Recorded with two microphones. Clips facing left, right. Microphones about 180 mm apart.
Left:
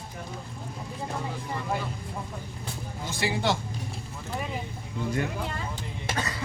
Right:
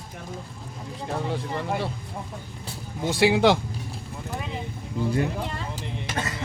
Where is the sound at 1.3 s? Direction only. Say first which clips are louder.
Right 4 dB; 70° right (ahead or behind).